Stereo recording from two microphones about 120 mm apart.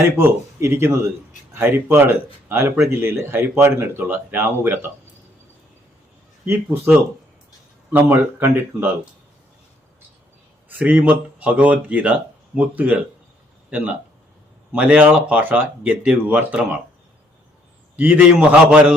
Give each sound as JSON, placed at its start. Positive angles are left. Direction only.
{"t": 0.2, "sound": "speech", "side_deg": -20}
{"t": 6.4, "sound": "speech", "side_deg": -20}
{"t": 7.9, "sound": "speech", "side_deg": -15}
{"t": 10.7, "sound": "speech", "side_deg": -15}
{"t": 17.9, "sound": "speech", "side_deg": -10}